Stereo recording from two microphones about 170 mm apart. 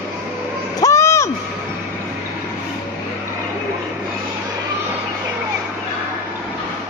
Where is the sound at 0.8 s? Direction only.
15° left (ahead or behind).